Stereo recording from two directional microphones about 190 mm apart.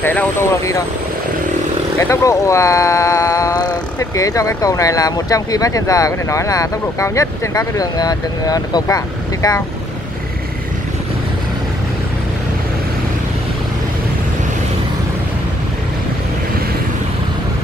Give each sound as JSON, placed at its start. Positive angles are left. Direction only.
{"t": 0.0, "sound": "speech", "side_deg": 10}
{"t": 2.0, "sound": "speech", "side_deg": 15}